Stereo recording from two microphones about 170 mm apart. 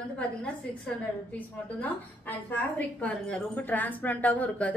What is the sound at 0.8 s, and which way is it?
A woman's voice, 5° left (ahead or behind).